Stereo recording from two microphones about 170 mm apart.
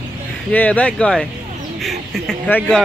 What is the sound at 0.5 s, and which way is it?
Speech, 10° left (ahead or behind).